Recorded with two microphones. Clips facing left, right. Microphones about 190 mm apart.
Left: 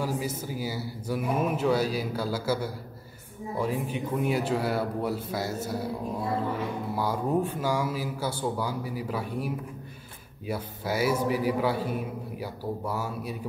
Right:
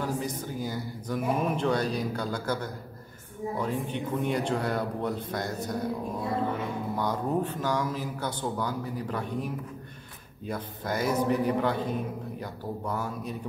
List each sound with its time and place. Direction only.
0.0 s a man's voice: 5° left (ahead or behind)
7.0 s a man's voice: 5° left (ahead or behind)